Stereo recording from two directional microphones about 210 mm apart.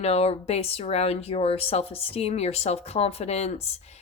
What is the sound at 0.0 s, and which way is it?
Speech, 30° left (ahead or behind).